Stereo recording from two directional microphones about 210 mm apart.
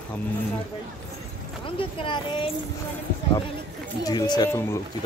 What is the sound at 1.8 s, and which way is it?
Speech, 25° left (ahead or behind).